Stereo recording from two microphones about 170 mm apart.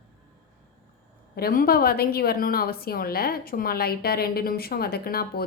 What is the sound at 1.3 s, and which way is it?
A woman's voice, 60° left (ahead or behind).